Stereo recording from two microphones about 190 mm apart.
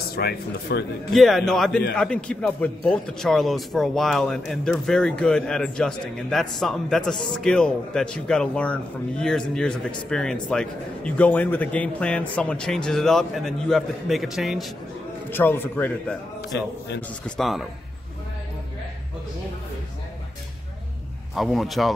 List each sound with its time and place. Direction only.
0.1 s speech: 55° left (ahead or behind)
1.1 s a man's voice: centre (ahead or behind)
15.2 s a man's voice: 10° left (ahead or behind)
16.5 s speech: 65° left (ahead or behind)
17.4 s a man's voice: centre (ahead or behind)
21.4 s a man's voice: centre (ahead or behind)